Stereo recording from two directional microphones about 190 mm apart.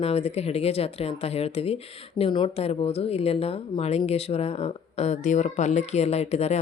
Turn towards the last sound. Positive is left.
turn(degrees=35)  # may be behind; listen again after turning